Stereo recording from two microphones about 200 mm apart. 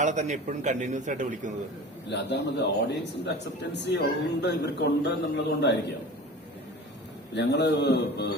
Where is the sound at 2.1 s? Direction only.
55° left (ahead or behind).